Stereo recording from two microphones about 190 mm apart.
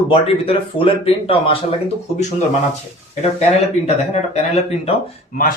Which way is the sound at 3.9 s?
35° left (ahead or behind).